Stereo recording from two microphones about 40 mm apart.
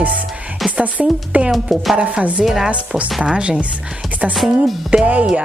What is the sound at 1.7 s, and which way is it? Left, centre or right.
Speech, centre.